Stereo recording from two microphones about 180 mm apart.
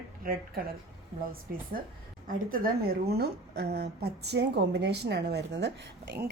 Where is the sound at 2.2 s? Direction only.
55° right (ahead or behind); by 5.7 s 70° right (ahead or behind).